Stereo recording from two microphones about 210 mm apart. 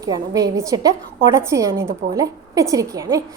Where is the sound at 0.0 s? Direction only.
15° right (ahead or behind).